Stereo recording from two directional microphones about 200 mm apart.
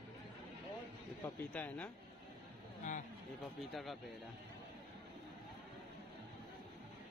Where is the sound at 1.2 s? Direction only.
10° left (ahead or behind).